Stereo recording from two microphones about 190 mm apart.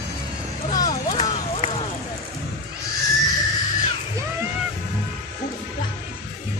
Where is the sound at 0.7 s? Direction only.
20° left (ahead or behind).